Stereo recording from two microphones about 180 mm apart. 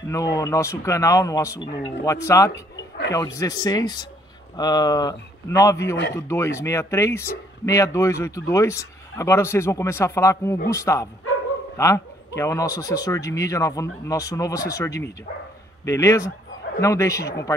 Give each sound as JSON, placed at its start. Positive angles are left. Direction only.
{"t": 0.1, "sound": "speech", "side_deg": 20}